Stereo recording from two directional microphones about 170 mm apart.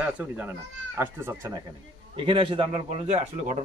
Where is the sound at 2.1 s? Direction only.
30° right (ahead or behind).